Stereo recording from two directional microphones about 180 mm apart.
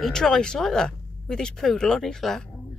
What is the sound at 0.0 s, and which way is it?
Speech, 5° left (ahead or behind).